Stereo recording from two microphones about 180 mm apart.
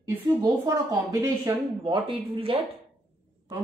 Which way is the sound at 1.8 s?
30° right (ahead or behind).